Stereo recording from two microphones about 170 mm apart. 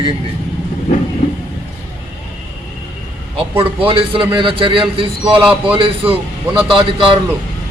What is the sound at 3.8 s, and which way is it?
A man's voice, 30° right (ahead or behind).